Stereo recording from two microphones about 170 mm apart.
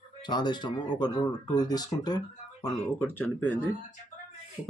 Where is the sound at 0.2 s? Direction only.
25° left (ahead or behind).